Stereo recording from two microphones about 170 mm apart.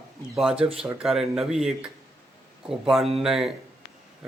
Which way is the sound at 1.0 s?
Centre (ahead or behind).